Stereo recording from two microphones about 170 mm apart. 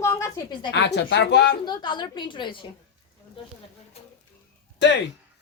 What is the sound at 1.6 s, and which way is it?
A woman's voice, 25° left (ahead or behind).